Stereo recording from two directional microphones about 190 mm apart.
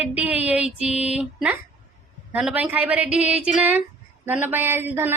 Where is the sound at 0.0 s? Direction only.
10° right (ahead or behind).